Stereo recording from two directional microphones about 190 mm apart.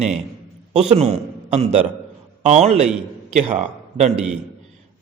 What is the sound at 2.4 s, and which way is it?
A man's voice, 35° right (ahead or behind).